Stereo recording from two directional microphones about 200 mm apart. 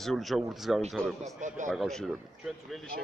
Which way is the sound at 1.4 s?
40° right (ahead or behind).